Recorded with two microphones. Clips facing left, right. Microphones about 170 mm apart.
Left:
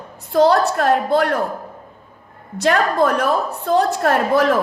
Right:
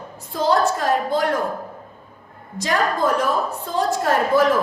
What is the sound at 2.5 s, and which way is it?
A woman's voice, 65° left (ahead or behind).